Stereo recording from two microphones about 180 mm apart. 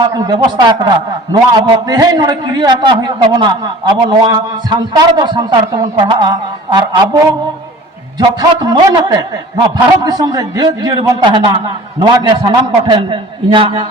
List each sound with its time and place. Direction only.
0.0 s a man's voice: 25° right (ahead or behind)
8.4 s a man's voice: 20° right (ahead or behind)